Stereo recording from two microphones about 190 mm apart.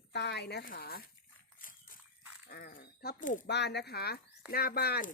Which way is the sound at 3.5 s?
60° left (ahead or behind).